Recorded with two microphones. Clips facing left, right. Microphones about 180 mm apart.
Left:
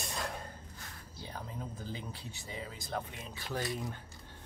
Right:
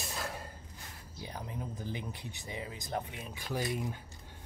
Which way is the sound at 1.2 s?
15° right (ahead or behind).